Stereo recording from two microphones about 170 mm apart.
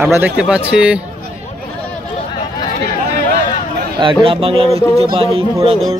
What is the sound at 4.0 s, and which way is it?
Speech, 30° right (ahead or behind).